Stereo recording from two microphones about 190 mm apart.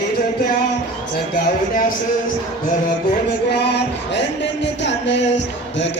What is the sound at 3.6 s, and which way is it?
Music, 65° left (ahead or behind).